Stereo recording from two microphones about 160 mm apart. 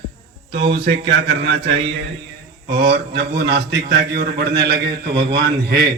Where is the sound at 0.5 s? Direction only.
90° right.